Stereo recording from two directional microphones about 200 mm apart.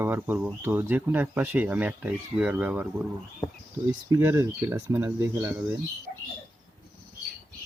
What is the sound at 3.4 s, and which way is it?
Insect, 15° left (ahead or behind).